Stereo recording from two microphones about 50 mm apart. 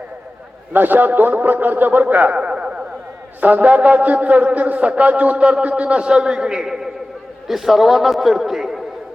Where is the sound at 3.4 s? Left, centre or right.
Right; by 8.8 s centre.